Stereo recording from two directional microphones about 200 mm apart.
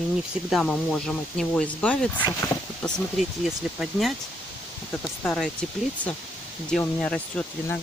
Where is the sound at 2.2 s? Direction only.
20° left (ahead or behind).